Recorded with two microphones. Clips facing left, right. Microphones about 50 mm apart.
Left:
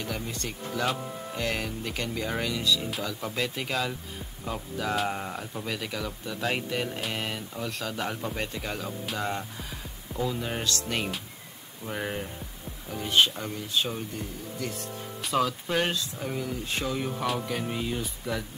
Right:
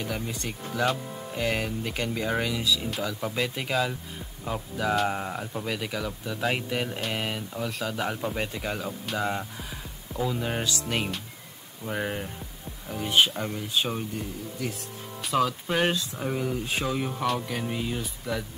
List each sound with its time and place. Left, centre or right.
0.0 s speech: centre
13.4 s speech: centre
14.1 s speech: centre
15.6 s speech: centre